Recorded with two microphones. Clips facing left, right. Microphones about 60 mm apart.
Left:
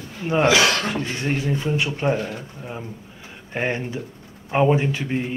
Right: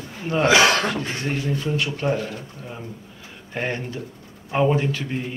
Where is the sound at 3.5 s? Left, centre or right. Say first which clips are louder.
Left 2 dB; centre.